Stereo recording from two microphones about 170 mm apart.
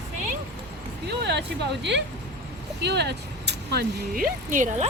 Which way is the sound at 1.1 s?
75° right (ahead or behind).